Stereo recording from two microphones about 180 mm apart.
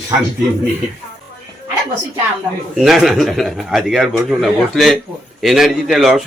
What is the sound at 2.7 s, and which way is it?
A man's voice, centre (ahead or behind).